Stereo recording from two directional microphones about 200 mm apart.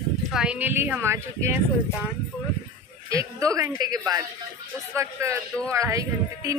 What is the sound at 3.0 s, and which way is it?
Speech, 15° right (ahead or behind).